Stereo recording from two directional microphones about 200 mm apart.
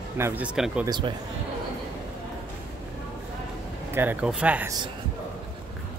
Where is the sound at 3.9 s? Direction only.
10° right (ahead or behind).